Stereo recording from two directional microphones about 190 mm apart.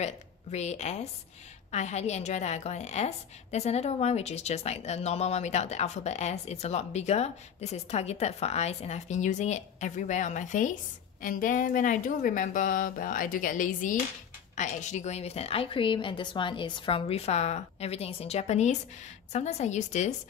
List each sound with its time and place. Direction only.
0.0 s a woman's voice: 35° left (ahead or behind)